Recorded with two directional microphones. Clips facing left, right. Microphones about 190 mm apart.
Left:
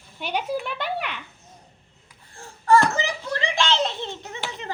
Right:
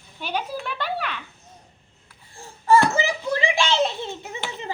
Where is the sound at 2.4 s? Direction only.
15° right (ahead or behind).